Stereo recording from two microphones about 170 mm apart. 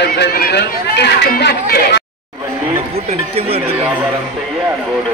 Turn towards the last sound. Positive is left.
turn(degrees=-35)  # may be behind; listen again after turning